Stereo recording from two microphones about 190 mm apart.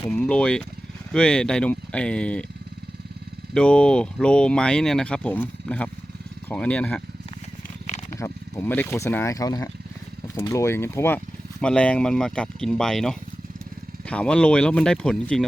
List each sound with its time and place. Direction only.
0.1 s speech: 5° left (ahead or behind)
3.5 s speech: 5° left (ahead or behind)
7.9 s a sound: 40° left (ahead or behind)
8.2 s speech: 15° left (ahead or behind)